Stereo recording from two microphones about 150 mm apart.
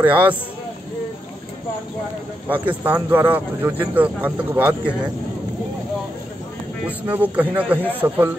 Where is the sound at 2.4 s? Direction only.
10° right (ahead or behind).